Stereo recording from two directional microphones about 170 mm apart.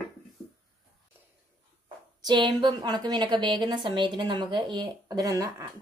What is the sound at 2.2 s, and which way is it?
A woman's voice, 25° right (ahead or behind).